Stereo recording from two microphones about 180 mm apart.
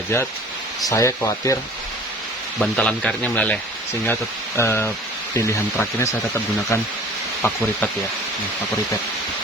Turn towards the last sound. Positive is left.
turn(degrees=5)  # may be behind; listen again after turning